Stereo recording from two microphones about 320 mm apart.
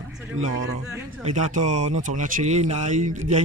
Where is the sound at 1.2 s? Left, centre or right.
Right.